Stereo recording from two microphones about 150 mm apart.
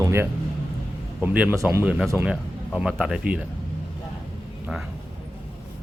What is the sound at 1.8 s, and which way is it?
Speech, 5° right (ahead or behind).